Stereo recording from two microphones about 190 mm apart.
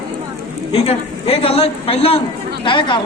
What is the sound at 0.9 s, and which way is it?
A woman's voice, 30° left (ahead or behind).